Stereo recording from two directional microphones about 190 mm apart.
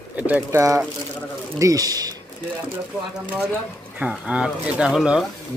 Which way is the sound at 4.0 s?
5° right (ahead or behind).